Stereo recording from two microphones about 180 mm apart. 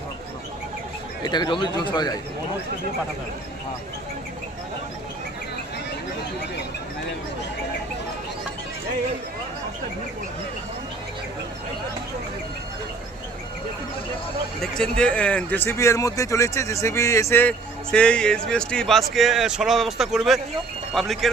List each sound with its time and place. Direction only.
1.2 s speech: 25° left (ahead or behind)
14.6 s speech: 5° left (ahead or behind)